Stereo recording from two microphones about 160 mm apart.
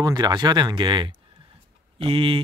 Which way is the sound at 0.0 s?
25° right (ahead or behind).